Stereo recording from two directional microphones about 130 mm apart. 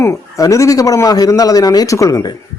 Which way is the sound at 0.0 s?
25° left (ahead or behind).